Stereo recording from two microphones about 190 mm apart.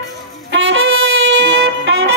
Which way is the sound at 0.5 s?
85° right.